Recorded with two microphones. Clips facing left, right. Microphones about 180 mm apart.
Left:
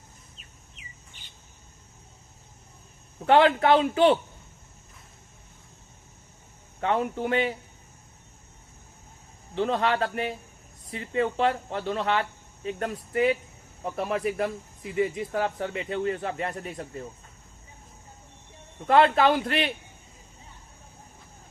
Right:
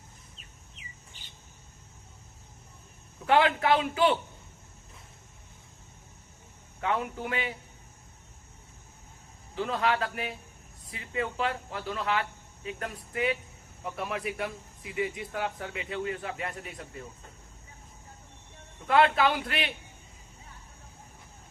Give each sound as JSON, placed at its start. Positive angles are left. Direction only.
{"t": 3.2, "sound": "speech", "side_deg": 35}
{"t": 6.8, "sound": "speech", "side_deg": 30}
{"t": 9.6, "sound": "speech", "side_deg": 35}
{"t": 18.9, "sound": "speech", "side_deg": 35}